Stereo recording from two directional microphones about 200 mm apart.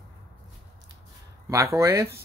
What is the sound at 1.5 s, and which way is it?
Speech, 15° right (ahead or behind).